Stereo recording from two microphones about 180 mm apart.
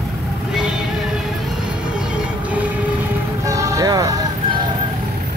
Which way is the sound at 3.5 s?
15° right (ahead or behind).